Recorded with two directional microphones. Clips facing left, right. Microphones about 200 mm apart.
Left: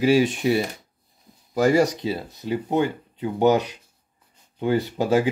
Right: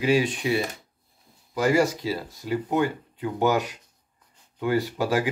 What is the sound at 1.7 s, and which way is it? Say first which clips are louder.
A man's voice: left 1 dB; 25° left (ahead or behind).